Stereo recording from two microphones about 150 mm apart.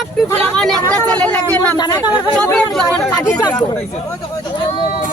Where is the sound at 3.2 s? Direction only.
25° left (ahead or behind).